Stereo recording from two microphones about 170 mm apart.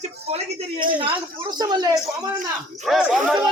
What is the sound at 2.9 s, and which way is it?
Speech, centre (ahead or behind).